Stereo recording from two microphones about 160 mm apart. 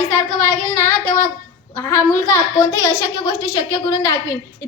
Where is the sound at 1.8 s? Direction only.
20° left (ahead or behind).